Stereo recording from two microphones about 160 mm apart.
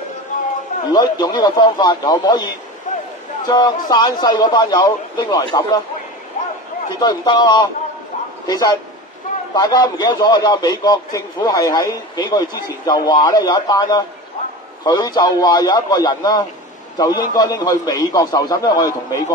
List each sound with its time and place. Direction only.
0.9 s a man's voice: 25° left (ahead or behind)
3.4 s a man's voice: 25° left (ahead or behind)
7.0 s a man's voice: 25° left (ahead or behind)